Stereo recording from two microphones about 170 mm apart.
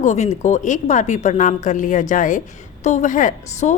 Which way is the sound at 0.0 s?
40° left (ahead or behind).